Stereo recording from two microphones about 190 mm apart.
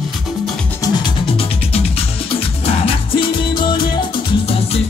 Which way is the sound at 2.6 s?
30° left (ahead or behind).